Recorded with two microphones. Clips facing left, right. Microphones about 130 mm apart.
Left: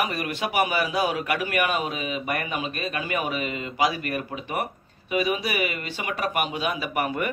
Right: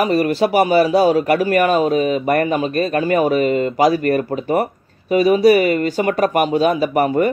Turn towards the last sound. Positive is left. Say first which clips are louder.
# right 11 dB
turn(degrees=-35)  # may be behind; listen again after turning